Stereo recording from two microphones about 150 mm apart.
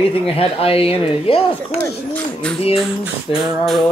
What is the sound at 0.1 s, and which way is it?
Speech, 40° left (ahead or behind).